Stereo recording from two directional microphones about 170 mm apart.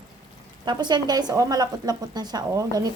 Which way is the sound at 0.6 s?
25° right (ahead or behind).